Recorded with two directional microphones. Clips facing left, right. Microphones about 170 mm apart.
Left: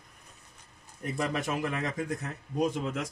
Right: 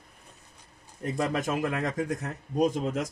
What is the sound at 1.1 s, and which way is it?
Speech, 45° right (ahead or behind).